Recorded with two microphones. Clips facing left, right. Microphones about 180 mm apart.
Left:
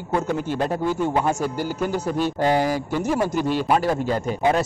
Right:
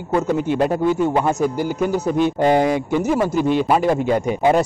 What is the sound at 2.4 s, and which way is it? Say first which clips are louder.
Speech: right 3 dB; 15° right (ahead or behind).